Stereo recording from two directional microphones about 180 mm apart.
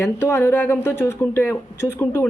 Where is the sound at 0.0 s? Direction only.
15° left (ahead or behind).